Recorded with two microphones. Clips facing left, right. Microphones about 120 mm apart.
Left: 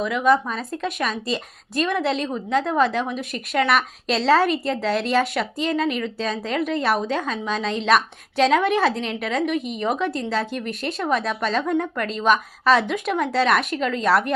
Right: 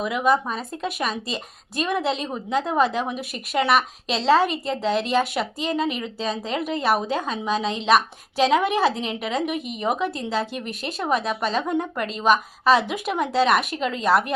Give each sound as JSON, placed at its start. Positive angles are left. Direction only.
{"t": 0.0, "sound": "a woman's voice", "side_deg": -5}
{"t": 11.6, "sound": "speech", "side_deg": -20}
{"t": 12.0, "sound": "a woman's voice", "side_deg": -5}